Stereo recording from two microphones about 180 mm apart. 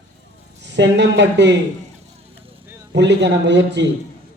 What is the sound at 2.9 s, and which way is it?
Speech, 75° right (ahead or behind).